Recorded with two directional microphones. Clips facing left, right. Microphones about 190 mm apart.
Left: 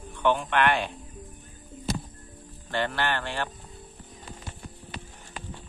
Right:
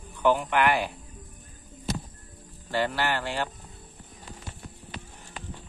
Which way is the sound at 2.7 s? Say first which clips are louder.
Right 1 dB; 10° right (ahead or behind).